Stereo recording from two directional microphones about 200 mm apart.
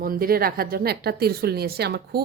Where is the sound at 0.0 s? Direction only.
45° right (ahead or behind).